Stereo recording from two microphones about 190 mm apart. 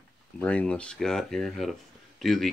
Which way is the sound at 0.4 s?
5° left (ahead or behind).